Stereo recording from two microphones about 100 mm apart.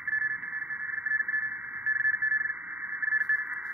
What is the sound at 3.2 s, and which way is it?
Squeal, centre (ahead or behind).